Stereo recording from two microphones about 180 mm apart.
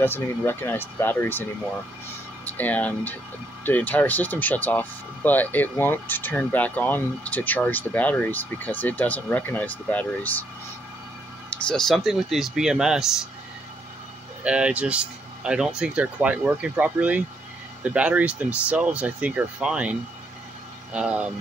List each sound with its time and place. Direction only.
0.0 s speech: 10° left (ahead or behind)
11.5 s speech: 5° left (ahead or behind)
14.4 s speech: 5° right (ahead or behind)